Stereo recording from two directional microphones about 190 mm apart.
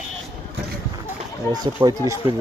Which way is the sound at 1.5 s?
20° right (ahead or behind).